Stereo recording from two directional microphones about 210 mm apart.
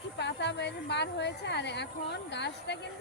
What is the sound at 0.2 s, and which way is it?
A woman's voice, 55° left (ahead or behind).